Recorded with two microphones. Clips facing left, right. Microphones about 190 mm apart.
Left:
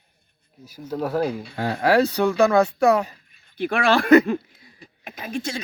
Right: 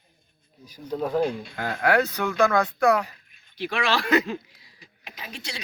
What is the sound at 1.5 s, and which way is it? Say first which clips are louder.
Speech: left 4 dB; 30° left (ahead or behind).